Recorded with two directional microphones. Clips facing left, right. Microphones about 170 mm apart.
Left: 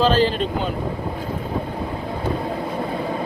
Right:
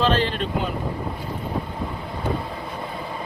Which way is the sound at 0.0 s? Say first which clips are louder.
Left 4 dB; 35° left (ahead or behind).